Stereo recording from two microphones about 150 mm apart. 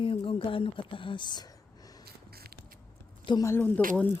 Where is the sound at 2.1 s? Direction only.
90° right.